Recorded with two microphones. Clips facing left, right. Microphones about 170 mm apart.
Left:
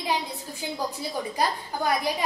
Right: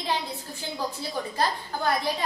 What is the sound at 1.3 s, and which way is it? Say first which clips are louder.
Speech: even; 15° left (ahead or behind).